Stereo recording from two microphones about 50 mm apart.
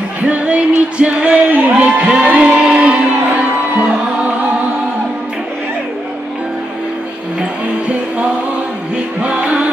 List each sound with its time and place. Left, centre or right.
0.2 s music: right